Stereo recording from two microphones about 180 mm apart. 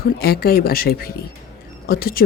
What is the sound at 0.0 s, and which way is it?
A woman's voice, 60° left (ahead or behind).